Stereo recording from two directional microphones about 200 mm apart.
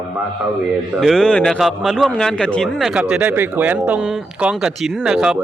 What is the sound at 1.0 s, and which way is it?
A man's voice, centre (ahead or behind).